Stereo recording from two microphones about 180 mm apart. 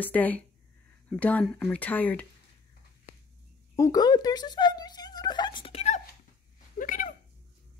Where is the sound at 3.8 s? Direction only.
20° left (ahead or behind); by 6.0 s 35° left (ahead or behind).